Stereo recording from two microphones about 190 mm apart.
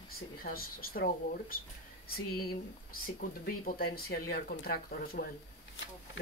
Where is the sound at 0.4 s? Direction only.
50° left (ahead or behind).